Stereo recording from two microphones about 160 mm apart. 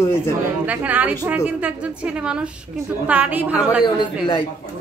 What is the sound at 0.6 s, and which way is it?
Speech, 10° right (ahead or behind).